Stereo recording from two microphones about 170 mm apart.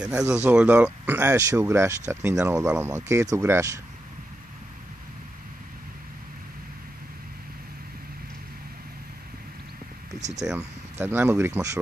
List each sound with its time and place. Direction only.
0.0 s speech: 5° right (ahead or behind)
10.4 s speech: 10° right (ahead or behind)